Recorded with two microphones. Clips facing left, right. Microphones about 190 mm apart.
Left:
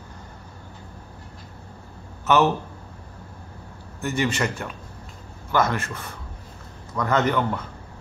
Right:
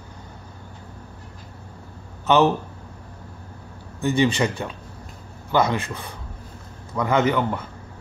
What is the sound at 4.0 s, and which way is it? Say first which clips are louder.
A man's voice: right 4 dB; 15° right (ahead or behind).